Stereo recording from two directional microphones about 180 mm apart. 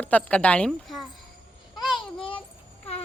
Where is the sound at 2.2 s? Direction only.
30° left (ahead or behind).